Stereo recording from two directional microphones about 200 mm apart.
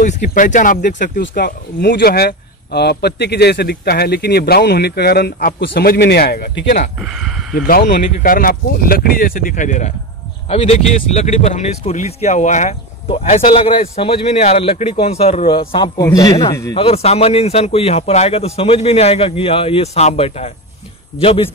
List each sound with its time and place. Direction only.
0.0 s a man's voice: 40° left (ahead or behind)
7.0 s speech: centre (ahead or behind)
7.5 s a man's voice: 45° left (ahead or behind); by 16.7 s 20° left (ahead or behind)
16.7 s a man's voice: 30° left (ahead or behind)